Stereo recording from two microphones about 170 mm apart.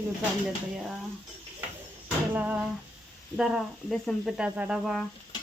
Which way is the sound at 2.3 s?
10° right (ahead or behind).